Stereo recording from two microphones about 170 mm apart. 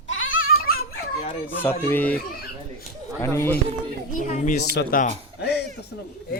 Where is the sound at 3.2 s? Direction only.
15° left (ahead or behind).